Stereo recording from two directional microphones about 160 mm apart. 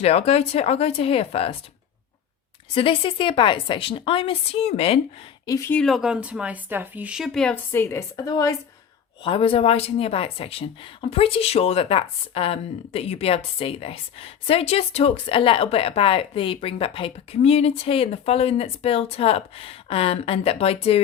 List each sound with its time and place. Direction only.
0.0 s speech: 40° left (ahead or behind)
2.7 s speech: 35° left (ahead or behind)
5.5 s speech: 20° left (ahead or behind)
5.7 s speech: centre (ahead or behind); by 8.5 s 25° left (ahead or behind)
9.2 s speech: 35° left (ahead or behind)